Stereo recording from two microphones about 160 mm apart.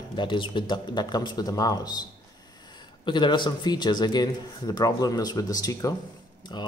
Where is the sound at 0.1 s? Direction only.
30° left (ahead or behind).